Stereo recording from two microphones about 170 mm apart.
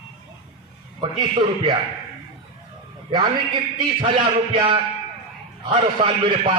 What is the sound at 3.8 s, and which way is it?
A man's voice, 30° right (ahead or behind).